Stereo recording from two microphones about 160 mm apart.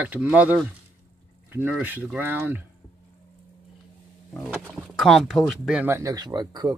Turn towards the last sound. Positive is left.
turn(degrees=-25)  # may be behind; listen again after turning